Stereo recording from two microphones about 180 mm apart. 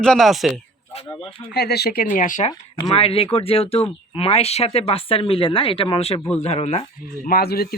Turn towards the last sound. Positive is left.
turn(degrees=60)  # may be behind; listen again after turning